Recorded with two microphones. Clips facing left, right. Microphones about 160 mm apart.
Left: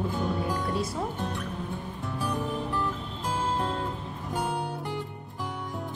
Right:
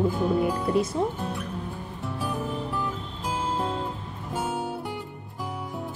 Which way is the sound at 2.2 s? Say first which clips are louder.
Even; centre (ahead or behind).